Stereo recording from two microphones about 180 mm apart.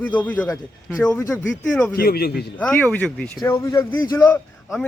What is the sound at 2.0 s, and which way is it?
Speech, 60° left (ahead or behind).